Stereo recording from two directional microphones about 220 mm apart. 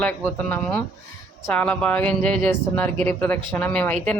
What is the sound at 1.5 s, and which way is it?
A woman's voice, 5° left (ahead or behind).